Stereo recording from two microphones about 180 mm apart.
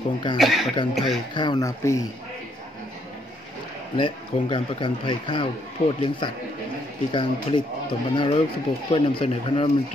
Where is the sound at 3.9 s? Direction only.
25° left (ahead or behind).